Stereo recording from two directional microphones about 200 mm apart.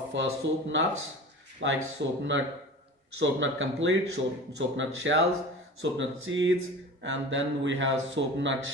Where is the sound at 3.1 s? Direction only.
70° right (ahead or behind).